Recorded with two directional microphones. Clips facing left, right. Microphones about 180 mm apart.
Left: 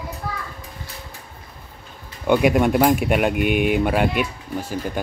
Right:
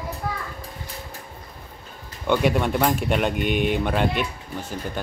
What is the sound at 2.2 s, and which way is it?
Speech, 10° left (ahead or behind).